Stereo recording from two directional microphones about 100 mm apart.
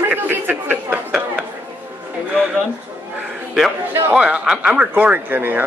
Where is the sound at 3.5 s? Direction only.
5° right (ahead or behind).